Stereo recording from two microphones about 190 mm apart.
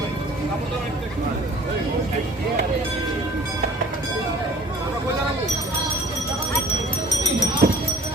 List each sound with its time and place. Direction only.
7.6 s music: 45° right (ahead or behind)